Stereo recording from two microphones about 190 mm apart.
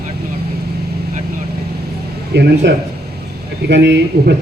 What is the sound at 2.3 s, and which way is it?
Speech, 65° right (ahead or behind).